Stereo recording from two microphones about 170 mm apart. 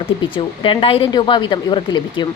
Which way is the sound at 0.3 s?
30° left (ahead or behind).